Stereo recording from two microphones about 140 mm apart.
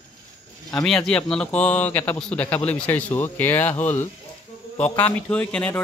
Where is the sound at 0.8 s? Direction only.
5° left (ahead or behind).